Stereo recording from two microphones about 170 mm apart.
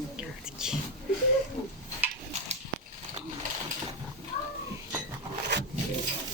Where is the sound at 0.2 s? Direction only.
5° right (ahead or behind).